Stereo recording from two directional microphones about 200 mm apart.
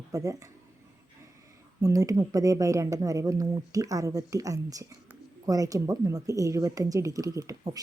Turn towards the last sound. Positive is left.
turn(degrees=-20)  # may be behind; listen again after turning